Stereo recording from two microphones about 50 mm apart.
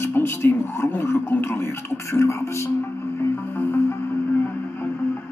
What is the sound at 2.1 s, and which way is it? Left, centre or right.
Speech, left.